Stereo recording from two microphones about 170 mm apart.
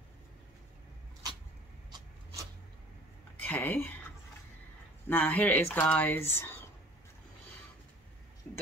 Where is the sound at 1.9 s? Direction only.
25° right (ahead or behind).